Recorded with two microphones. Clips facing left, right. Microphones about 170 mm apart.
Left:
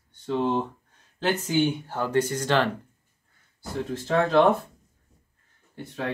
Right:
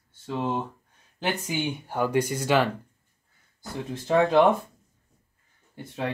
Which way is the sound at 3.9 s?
15° right (ahead or behind).